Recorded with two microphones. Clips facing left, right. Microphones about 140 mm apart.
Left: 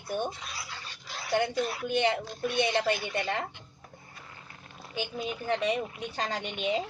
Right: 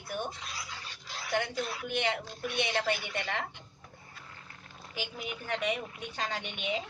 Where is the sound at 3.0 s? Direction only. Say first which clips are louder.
Left 4 dB; 40° left (ahead or behind).